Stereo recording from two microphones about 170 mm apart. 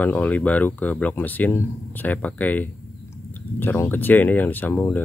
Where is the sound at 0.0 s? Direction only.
10° left (ahead or behind).